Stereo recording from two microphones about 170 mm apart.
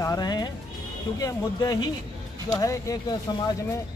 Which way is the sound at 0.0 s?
20° left (ahead or behind).